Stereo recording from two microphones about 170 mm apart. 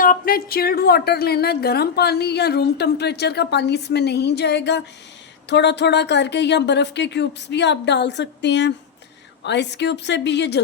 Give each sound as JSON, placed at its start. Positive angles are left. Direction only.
{"t": 0.0, "sound": "a woman's voice", "side_deg": 55}